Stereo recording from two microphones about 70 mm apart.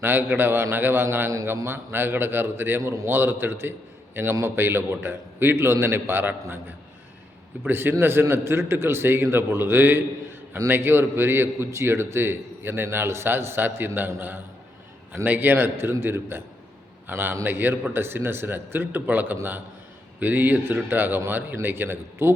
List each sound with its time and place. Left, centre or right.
0.0 s a man's voice: right
2.8 s a man's voice: right
3.1 s a man's voice: right